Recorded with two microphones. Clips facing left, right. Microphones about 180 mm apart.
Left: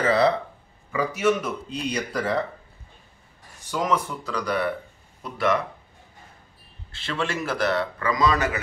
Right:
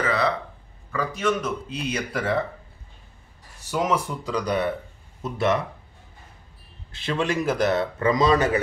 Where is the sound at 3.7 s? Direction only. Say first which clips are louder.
Right 1 dB; 10° right (ahead or behind).